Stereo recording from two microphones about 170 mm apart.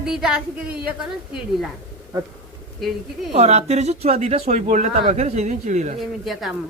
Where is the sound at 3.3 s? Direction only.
40° right (ahead or behind).